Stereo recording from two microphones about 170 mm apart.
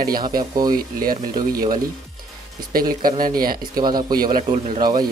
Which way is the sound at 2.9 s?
55° right (ahead or behind).